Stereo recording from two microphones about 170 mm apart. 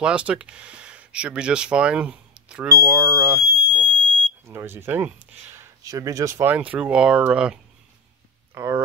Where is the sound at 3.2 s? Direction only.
10° right (ahead or behind).